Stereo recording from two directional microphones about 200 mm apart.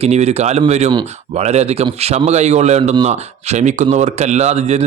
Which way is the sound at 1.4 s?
35° right (ahead or behind).